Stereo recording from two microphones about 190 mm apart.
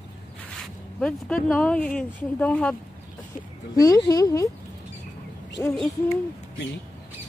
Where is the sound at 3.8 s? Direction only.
20° left (ahead or behind).